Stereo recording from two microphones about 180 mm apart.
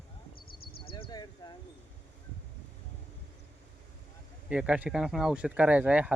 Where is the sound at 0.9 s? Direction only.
30° left (ahead or behind).